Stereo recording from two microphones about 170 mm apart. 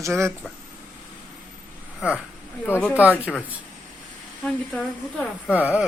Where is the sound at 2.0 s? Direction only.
5° right (ahead or behind).